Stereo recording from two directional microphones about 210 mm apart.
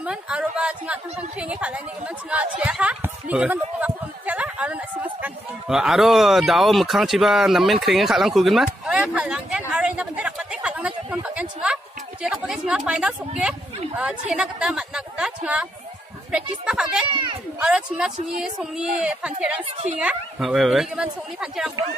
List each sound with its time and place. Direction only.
0.0 s a woman's voice: 5° right (ahead or behind)
19.6 s a woman's voice: 35° right (ahead or behind)
20.0 s a woman's voice: 5° right (ahead or behind)